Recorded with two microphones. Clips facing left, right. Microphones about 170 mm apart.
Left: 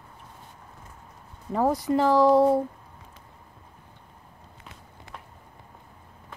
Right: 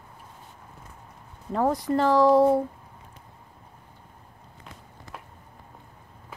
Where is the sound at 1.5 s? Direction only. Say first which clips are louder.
Left 1 dB; 5° left (ahead or behind).